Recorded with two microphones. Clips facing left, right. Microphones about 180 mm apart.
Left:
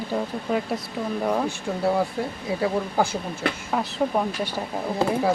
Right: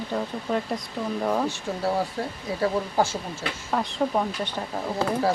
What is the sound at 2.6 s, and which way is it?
Speech, 15° left (ahead or behind).